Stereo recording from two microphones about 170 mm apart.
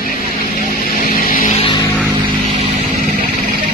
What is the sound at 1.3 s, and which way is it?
Vehicle, 30° left (ahead or behind).